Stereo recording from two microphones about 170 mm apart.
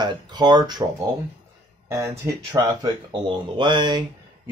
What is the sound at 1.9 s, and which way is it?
Speech, 15° right (ahead or behind).